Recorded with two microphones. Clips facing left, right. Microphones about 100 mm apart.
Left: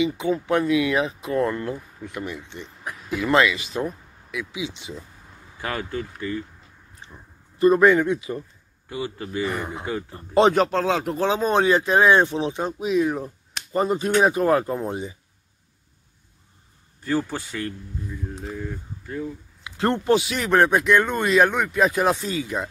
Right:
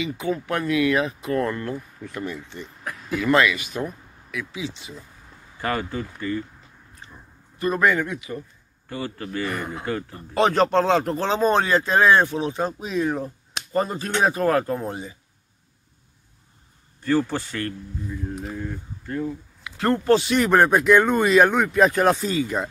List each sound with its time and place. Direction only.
0.0 s speech: 20° left (ahead or behind)
5.6 s speech: centre (ahead or behind)
7.5 s speech: 25° left (ahead or behind)
8.8 s speech: 10° left (ahead or behind)
10.5 s speech: 5° left (ahead or behind)
13.7 s speech: 15° left (ahead or behind)
17.0 s speech: 10° left (ahead or behind)
19.6 s speech: 25° left (ahead or behind)
20.2 s speech: centre (ahead or behind)